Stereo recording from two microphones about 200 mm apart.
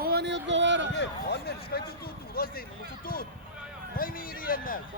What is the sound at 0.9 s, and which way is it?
Speech, 55° left (ahead or behind).